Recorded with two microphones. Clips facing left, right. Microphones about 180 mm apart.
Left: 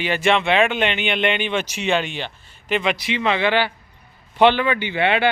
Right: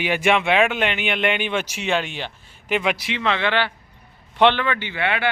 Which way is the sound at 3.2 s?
10° left (ahead or behind).